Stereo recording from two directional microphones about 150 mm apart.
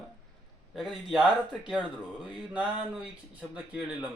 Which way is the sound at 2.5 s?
10° right (ahead or behind).